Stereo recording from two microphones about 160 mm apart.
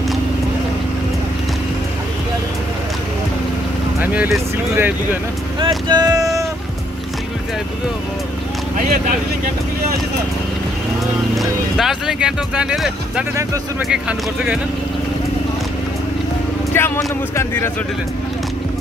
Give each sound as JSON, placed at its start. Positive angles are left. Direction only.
{"t": 4.0, "sound": "speech", "side_deg": -10}
{"t": 5.6, "sound": "vehicle", "side_deg": -25}
{"t": 11.3, "sound": "speech", "side_deg": 0}
{"t": 13.4, "sound": "speech", "side_deg": -20}
{"t": 13.8, "sound": "speech", "side_deg": -5}
{"t": 16.7, "sound": "speech", "side_deg": 15}